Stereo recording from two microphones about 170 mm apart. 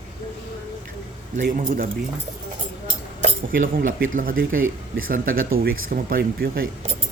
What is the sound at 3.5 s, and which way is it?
Speech, 55° right (ahead or behind).